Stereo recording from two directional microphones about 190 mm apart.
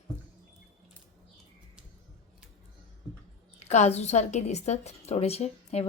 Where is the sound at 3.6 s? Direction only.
35° left (ahead or behind).